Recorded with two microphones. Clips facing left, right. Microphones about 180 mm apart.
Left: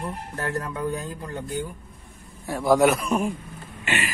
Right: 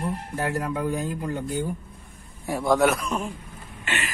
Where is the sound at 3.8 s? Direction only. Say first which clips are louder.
Left 3 dB; 10° left (ahead or behind).